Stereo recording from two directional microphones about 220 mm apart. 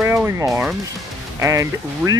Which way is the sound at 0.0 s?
10° right (ahead or behind).